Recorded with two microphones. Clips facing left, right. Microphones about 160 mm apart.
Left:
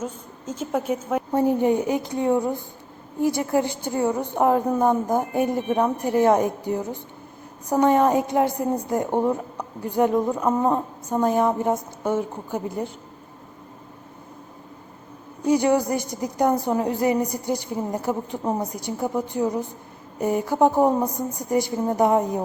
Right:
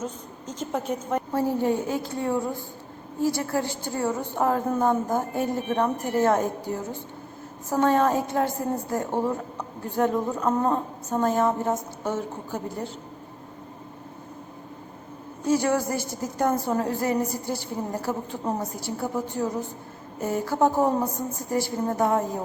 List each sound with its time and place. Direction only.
0.0 s a woman's voice: 10° left (ahead or behind)
15.4 s a woman's voice: 15° left (ahead or behind)